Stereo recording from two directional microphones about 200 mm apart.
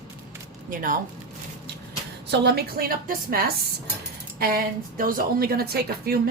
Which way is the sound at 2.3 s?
55° right (ahead or behind).